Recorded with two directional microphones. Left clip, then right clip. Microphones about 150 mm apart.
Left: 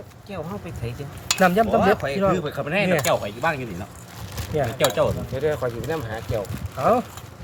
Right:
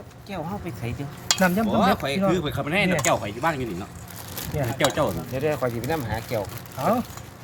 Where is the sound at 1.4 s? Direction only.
90° left.